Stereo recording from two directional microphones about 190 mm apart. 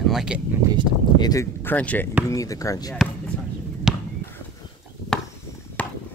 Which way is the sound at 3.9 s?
5° right (ahead or behind).